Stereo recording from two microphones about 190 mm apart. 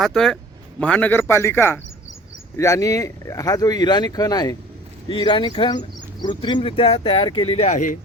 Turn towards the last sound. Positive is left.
turn(degrees=40)  # may be behind; listen again after turning